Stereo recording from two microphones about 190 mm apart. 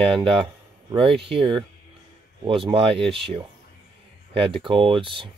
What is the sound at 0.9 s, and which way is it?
Speech, 30° right (ahead or behind).